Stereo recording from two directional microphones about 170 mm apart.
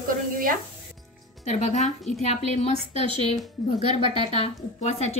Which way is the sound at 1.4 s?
40° left (ahead or behind).